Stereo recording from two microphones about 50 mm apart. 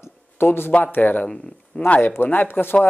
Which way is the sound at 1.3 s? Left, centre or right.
Centre.